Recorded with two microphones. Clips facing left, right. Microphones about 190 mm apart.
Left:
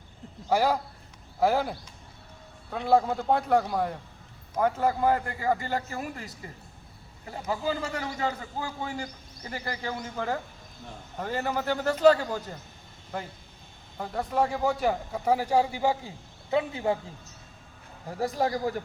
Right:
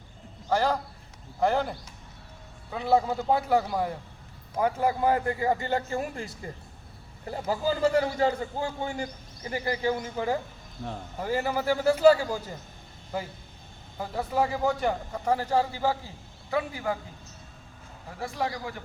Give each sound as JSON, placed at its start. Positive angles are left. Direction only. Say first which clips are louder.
{"t": 0.5, "sound": "a man's voice", "louder": "left 1 dB", "side_deg": 10}
{"t": 7.4, "sound": "a man's voice", "louder": "right 5 dB", "side_deg": -35}
{"t": 18.2, "sound": "speech", "louder": "left 5 dB", "side_deg": 40}